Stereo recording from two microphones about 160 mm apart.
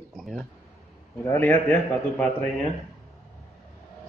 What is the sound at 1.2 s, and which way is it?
A man's voice, 15° left (ahead or behind).